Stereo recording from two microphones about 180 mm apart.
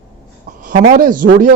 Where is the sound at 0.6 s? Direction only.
45° right (ahead or behind).